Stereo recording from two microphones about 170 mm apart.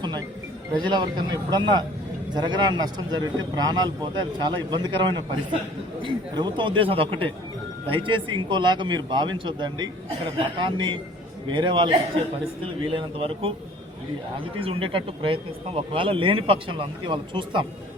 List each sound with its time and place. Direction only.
0.8 s speech: 25° right (ahead or behind)